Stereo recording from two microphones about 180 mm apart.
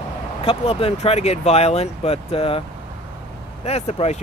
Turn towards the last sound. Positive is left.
turn(degrees=35)  # may be behind; listen again after turning